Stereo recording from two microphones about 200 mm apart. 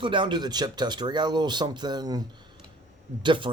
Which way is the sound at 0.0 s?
25° right (ahead or behind).